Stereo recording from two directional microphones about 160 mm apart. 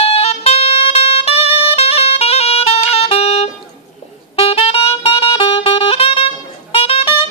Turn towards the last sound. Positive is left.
turn(degrees=35)  # may be behind; listen again after turning